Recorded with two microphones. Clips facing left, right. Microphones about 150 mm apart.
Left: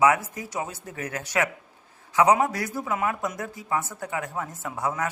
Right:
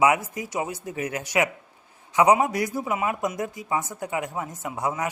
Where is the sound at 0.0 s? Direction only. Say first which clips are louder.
Even; 15° right (ahead or behind).